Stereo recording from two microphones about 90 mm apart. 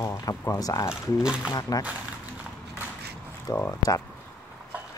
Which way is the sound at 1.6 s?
45° left (ahead or behind).